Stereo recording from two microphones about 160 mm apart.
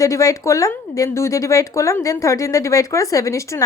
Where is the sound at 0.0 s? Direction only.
20° left (ahead or behind).